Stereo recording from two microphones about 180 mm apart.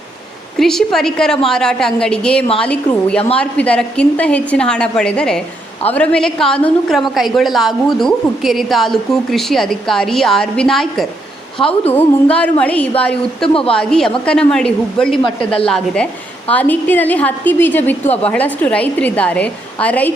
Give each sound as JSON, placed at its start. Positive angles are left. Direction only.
{"t": 0.6, "sound": "a woman's voice", "side_deg": 0}
{"t": 13.5, "sound": "a woman's voice", "side_deg": 30}
{"t": 13.7, "sound": "a woman's voice", "side_deg": 5}
{"t": 18.0, "sound": "a woman's voice", "side_deg": 35}
{"t": 18.3, "sound": "a woman's voice", "side_deg": 10}